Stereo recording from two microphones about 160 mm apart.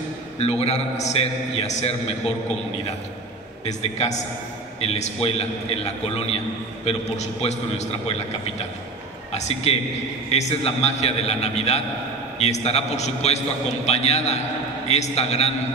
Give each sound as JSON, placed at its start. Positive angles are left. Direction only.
{"t": 0.4, "sound": "a man's voice", "side_deg": 40}
{"t": 3.6, "sound": "a man's voice", "side_deg": 45}
{"t": 6.8, "sound": "a man's voice", "side_deg": 40}
{"t": 9.3, "sound": "a man's voice", "side_deg": 40}